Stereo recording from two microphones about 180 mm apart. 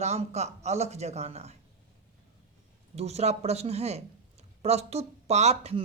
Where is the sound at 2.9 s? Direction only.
35° right (ahead or behind).